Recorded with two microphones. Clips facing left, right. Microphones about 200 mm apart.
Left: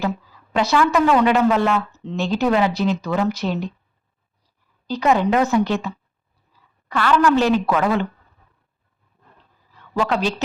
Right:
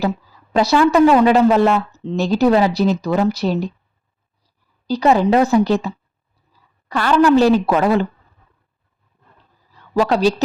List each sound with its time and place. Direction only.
0.0 s a woman's voice: 35° right (ahead or behind)
4.9 s a woman's voice: 35° right (ahead or behind)
9.9 s a woman's voice: 35° right (ahead or behind)